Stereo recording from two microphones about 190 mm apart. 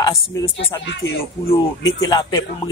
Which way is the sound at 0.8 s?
70° left (ahead or behind).